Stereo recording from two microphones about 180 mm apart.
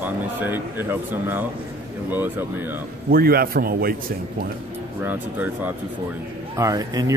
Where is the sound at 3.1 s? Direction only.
55° right (ahead or behind).